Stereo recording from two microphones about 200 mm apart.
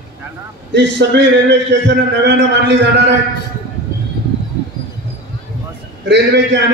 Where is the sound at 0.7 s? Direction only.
60° right (ahead or behind).